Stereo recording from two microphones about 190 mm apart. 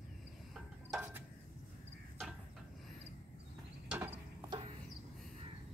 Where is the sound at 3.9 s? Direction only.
10° right (ahead or behind).